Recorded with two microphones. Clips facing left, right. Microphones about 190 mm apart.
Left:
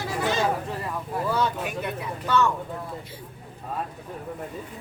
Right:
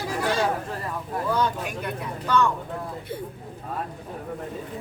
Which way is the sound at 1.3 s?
5° left (ahead or behind).